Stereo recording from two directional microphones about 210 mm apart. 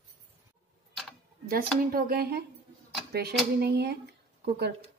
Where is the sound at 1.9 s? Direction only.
45° right (ahead or behind).